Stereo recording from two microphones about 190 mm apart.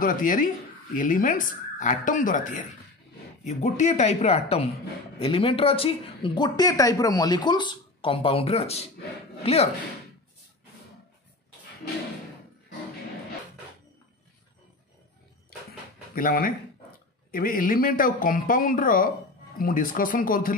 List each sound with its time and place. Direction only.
0.0 s speech: 45° left (ahead or behind)
16.2 s speech: 50° left (ahead or behind)